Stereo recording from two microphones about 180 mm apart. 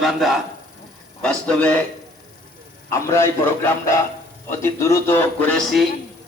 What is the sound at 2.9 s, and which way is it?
Speech, 15° left (ahead or behind).